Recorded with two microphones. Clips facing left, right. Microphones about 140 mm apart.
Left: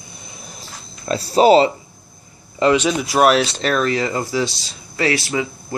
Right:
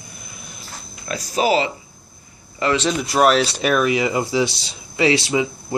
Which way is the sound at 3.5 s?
10° right (ahead or behind).